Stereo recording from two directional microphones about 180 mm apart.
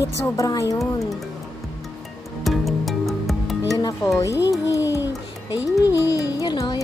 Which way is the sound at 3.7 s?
20° left (ahead or behind).